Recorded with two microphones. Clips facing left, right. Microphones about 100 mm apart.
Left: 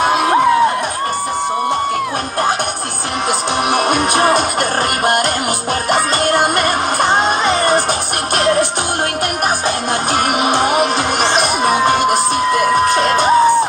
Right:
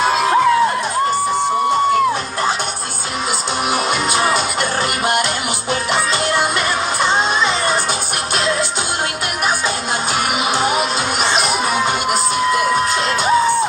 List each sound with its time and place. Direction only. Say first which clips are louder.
0.0 s crowd: left 2 dB; 60° left (ahead or behind)
3.7 s music: left 4 dB; 55° left (ahead or behind)
7.0 s music: left 2 dB; 55° left (ahead or behind)
10.4 s music: left 4 dB; 55° left (ahead or behind)